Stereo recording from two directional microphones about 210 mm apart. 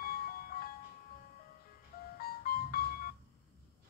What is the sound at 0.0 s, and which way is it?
Music, 45° left (ahead or behind).